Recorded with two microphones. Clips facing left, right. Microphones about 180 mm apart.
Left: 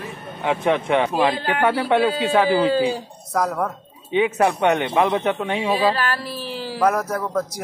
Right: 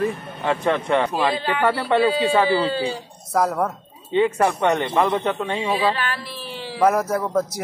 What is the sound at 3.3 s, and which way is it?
Speech, 5° right (ahead or behind).